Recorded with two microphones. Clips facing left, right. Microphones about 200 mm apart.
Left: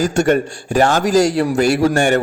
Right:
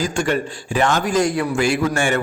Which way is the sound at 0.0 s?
45° left (ahead or behind).